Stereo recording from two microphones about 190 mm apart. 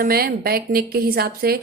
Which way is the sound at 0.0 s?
50° right (ahead or behind).